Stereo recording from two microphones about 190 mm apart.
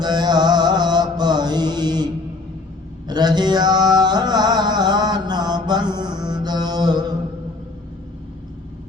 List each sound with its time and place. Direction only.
0.0 s mantra: 20° right (ahead or behind)
3.1 s music: 20° right (ahead or behind)